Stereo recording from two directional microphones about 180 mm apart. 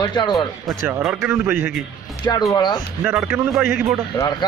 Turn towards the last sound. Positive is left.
turn(degrees=20)  # may be behind; listen again after turning